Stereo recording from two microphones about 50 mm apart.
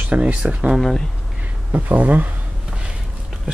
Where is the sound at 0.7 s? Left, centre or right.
Centre.